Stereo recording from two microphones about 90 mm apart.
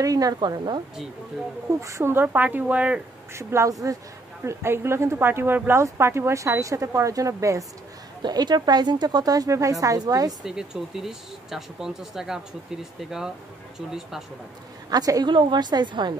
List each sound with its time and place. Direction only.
0.0 s a woman's voice: 40° right (ahead or behind)
1.8 s speech: 35° right (ahead or behind); by 3.0 s 15° right (ahead or behind)
3.3 s speech: 30° right (ahead or behind)
4.5 s speech: 30° right (ahead or behind)
8.2 s a woman's voice: 50° right (ahead or behind)
10.4 s speech: 5° right (ahead or behind)
13.7 s speech: 5° right (ahead or behind)
14.9 s a woman's voice: 45° right (ahead or behind)
15.2 s a woman's voice: 55° right (ahead or behind)